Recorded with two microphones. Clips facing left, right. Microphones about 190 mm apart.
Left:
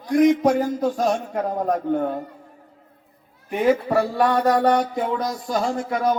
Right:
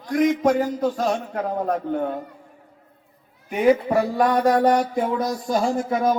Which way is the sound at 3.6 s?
15° right (ahead or behind).